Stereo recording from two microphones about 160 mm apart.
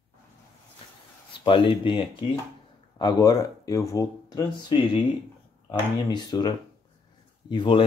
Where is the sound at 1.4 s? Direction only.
30° left (ahead or behind).